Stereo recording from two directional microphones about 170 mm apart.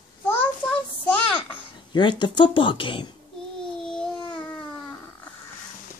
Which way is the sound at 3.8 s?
5° left (ahead or behind).